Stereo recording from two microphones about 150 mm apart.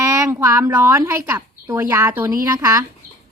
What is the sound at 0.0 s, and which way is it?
A woman's voice, 20° right (ahead or behind).